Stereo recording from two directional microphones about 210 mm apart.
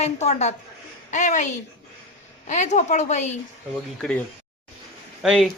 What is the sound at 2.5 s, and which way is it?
Speech, 35° left (ahead or behind).